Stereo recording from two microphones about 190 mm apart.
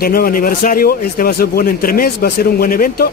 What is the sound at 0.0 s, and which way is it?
A man's voice, 50° left (ahead or behind).